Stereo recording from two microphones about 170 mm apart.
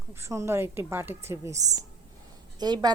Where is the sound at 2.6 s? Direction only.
25° right (ahead or behind).